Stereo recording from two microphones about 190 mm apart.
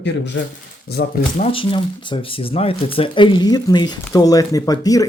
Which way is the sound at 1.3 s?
35° left (ahead or behind).